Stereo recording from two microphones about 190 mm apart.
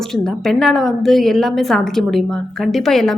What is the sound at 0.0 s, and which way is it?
A woman's voice, centre (ahead or behind).